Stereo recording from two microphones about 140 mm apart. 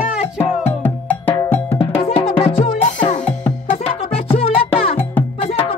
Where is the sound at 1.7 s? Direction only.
45° left (ahead or behind).